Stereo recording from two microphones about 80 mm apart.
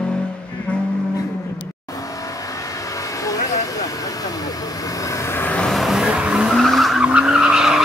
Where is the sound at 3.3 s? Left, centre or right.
Left.